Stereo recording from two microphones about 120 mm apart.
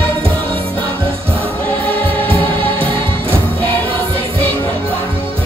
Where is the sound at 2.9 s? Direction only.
45° right (ahead or behind).